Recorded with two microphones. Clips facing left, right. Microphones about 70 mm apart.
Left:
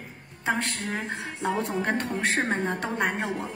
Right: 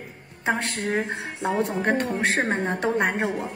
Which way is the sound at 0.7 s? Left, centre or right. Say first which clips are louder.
Right 6 dB; right.